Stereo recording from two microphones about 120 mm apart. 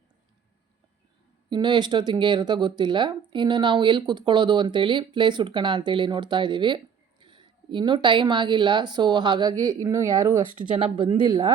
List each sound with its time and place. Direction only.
1.5 s speech: 40° right (ahead or behind); by 10.4 s 25° right (ahead or behind)
10.8 s speech: 45° right (ahead or behind)